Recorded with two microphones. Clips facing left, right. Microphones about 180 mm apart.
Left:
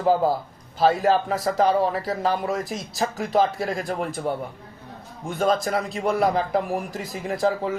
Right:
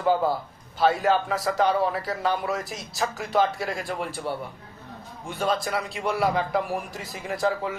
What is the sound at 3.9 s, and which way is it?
A man's voice, 45° left (ahead or behind).